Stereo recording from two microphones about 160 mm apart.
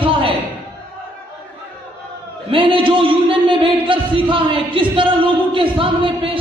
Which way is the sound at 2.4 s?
35° right (ahead or behind).